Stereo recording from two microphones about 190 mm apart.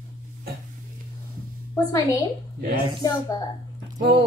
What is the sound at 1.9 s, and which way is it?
A child's voice, 20° left (ahead or behind).